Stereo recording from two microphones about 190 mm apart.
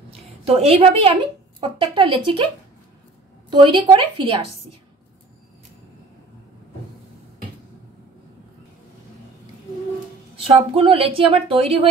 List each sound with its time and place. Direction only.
0.5 s a woman's voice: 30° right (ahead or behind)
10.3 s speech: 30° right (ahead or behind)